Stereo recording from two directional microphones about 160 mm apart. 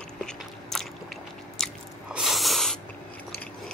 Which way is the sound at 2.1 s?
Centre (ahead or behind).